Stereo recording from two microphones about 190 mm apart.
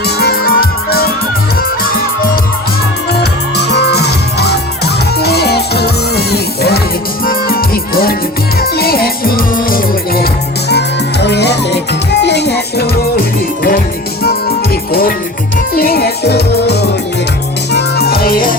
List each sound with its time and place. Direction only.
0.2 s music: 55° left (ahead or behind)
10.7 s music: 60° left (ahead or behind)
15.7 s music: 50° left (ahead or behind)